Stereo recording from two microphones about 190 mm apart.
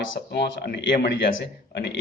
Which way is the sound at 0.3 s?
60° left (ahead or behind).